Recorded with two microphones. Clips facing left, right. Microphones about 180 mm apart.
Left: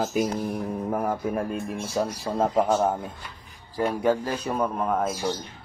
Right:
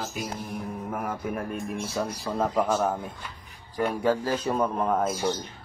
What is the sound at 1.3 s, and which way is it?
A man's voice, 25° left (ahead or behind).